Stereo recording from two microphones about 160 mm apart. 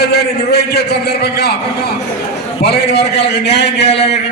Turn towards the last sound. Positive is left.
turn(degrees=90)